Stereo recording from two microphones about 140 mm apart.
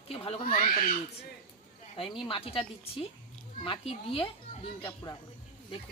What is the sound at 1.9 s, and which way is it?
Speech, 40° left (ahead or behind).